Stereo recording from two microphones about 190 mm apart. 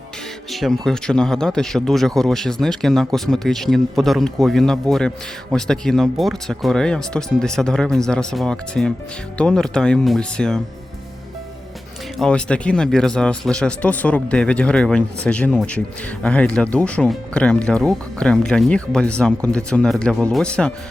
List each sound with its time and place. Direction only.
0.5 s speech: centre (ahead or behind)
12.2 s speech: 5° left (ahead or behind)